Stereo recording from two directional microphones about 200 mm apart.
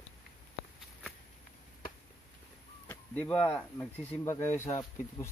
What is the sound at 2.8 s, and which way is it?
Speech, 10° left (ahead or behind).